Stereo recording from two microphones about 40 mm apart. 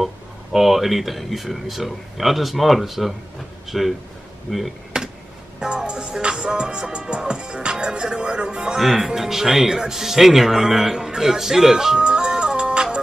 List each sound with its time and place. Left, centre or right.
0.0 s speech: centre
4.9 s a sound: right
5.6 s music: centre
8.7 s speech: centre
12.0 s music: right